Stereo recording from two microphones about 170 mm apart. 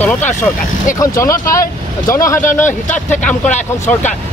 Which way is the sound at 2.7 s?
45° left (ahead or behind).